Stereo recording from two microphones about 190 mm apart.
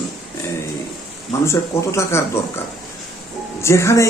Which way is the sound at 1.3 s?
15° left (ahead or behind).